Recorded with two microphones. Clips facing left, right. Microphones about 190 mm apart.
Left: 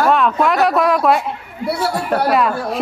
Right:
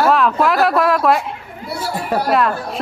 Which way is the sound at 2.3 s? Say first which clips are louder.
Right 1 dB; centre (ahead or behind).